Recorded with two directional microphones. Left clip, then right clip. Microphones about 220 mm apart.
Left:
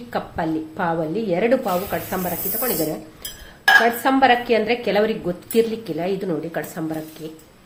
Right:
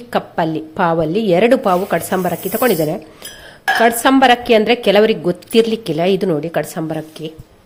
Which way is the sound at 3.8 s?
45° right (ahead or behind).